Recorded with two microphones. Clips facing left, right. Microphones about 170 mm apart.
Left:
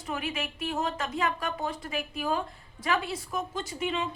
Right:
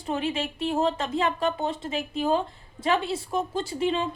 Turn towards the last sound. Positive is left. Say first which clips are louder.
# right 5 dB
turn(degrees=-30)  # may be behind; listen again after turning